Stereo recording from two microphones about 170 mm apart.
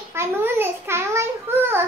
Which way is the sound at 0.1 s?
15° right (ahead or behind).